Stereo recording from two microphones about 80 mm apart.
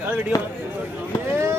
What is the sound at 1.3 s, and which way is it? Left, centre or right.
Vehicle, right.